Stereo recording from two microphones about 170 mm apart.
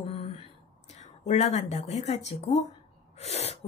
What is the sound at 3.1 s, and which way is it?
Sneeze, 40° left (ahead or behind).